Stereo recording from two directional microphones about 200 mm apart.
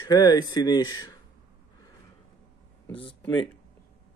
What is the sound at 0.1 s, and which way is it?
Speech, 20° left (ahead or behind).